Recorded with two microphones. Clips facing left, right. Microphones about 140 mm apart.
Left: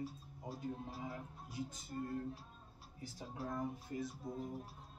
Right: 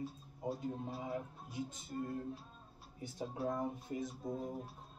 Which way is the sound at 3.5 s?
20° right (ahead or behind).